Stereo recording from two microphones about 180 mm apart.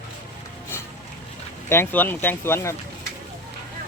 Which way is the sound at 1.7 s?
10° left (ahead or behind).